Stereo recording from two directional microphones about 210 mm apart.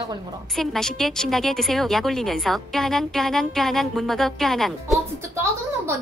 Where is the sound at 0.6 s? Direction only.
Centre (ahead or behind).